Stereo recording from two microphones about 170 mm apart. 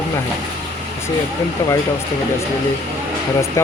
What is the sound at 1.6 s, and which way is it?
Speech, 15° left (ahead or behind).